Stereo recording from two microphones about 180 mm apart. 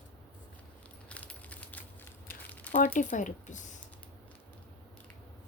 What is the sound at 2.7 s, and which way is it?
A woman's voice, 45° left (ahead or behind).